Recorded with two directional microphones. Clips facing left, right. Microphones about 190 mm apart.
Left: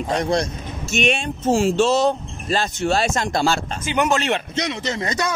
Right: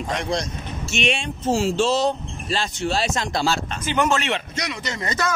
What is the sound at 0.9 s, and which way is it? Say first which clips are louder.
A man's voice: left 3 dB; 45° left (ahead or behind).